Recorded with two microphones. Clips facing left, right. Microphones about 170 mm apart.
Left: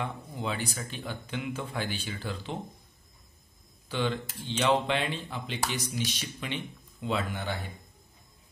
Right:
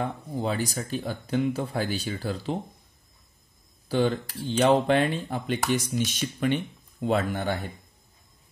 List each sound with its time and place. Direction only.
0.0 s speech: 40° right (ahead or behind)
3.9 s speech: 40° right (ahead or behind)